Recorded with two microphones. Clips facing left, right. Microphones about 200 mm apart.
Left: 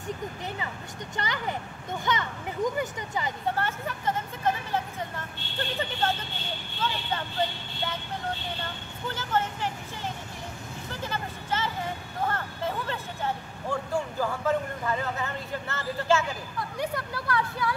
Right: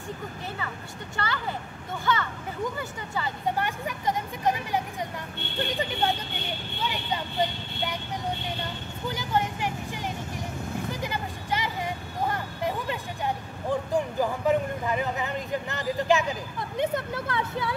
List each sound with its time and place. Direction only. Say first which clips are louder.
1.1 s a child's voice: even; 20° left (ahead or behind)
3.4 s speech: right 3 dB; 15° right (ahead or behind)